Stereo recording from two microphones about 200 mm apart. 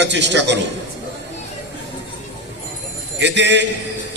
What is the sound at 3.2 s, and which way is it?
Speech, 60° right (ahead or behind).